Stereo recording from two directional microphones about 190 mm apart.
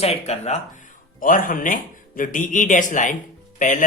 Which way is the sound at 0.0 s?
35° left (ahead or behind).